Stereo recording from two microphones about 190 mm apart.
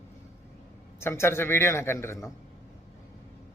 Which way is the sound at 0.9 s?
15° left (ahead or behind).